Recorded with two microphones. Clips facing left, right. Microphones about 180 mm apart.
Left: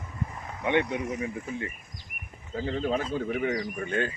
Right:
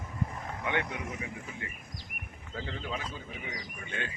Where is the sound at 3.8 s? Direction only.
40° left (ahead or behind).